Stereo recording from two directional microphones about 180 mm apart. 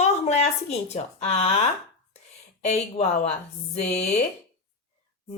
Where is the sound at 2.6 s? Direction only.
35° left (ahead or behind).